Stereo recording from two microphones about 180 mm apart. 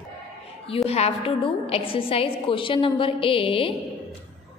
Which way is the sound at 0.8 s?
35° left (ahead or behind).